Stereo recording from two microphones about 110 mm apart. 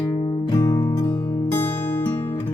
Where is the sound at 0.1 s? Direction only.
50° left (ahead or behind).